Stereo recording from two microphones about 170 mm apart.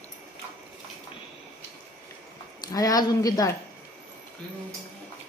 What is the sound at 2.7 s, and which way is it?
Speech, 20° left (ahead or behind).